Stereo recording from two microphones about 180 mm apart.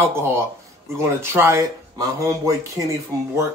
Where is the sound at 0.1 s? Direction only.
15° right (ahead or behind).